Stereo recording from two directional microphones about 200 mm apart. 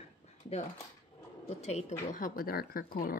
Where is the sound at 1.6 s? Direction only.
35° left (ahead or behind).